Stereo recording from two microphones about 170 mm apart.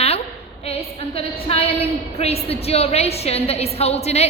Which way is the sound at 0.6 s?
35° left (ahead or behind).